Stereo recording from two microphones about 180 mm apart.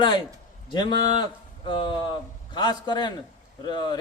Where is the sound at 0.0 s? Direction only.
25° left (ahead or behind).